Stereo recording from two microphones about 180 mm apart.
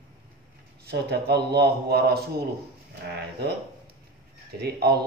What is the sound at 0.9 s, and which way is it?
Speech, 65° right (ahead or behind).